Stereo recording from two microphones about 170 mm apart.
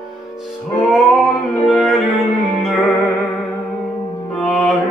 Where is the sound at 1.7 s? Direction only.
Centre (ahead or behind).